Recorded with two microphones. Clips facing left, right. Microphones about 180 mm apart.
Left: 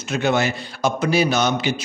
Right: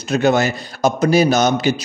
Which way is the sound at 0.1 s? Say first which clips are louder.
Right 5 dB; 40° right (ahead or behind).